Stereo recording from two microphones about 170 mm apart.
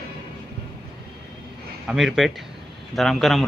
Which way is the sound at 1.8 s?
5° right (ahead or behind).